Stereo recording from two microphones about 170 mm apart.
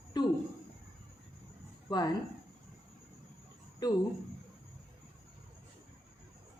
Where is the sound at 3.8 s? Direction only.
20° left (ahead or behind).